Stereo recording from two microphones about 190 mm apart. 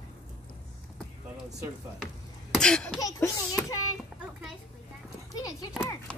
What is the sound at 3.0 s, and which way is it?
Child singing, 15° left (ahead or behind).